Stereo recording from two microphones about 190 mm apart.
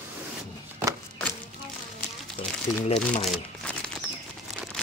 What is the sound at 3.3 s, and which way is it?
Crumpling, 5° left (ahead or behind).